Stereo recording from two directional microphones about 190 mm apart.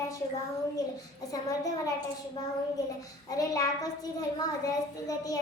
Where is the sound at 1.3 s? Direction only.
20° left (ahead or behind).